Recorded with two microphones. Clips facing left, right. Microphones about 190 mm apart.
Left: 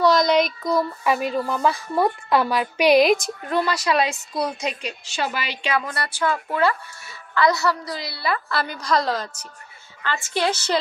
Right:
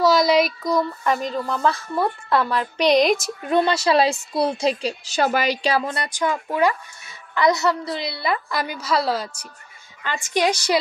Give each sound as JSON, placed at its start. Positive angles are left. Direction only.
{"t": 0.0, "sound": "speech", "side_deg": -5}
{"t": 3.4, "sound": "a woman's voice", "side_deg": -25}